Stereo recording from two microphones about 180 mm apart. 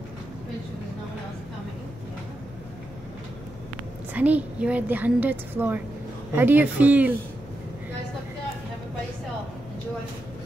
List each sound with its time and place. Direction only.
4.1 s a woman's voice: 10° right (ahead or behind)